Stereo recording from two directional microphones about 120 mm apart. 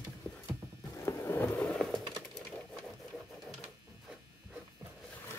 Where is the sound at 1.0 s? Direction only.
20° left (ahead or behind).